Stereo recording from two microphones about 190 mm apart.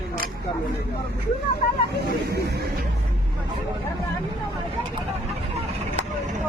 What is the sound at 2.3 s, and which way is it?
Speech, 55° right (ahead or behind).